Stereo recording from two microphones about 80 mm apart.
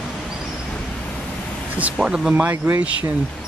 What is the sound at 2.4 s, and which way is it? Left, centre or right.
Speech, right.